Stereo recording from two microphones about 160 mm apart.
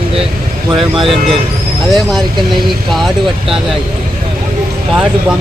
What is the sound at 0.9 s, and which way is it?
Speech, centre (ahead or behind).